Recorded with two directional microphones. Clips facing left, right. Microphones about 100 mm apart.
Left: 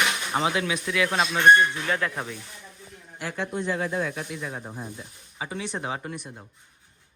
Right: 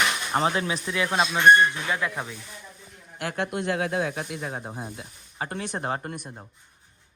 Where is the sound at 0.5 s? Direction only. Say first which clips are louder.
Left 1 dB; 30° right (ahead or behind).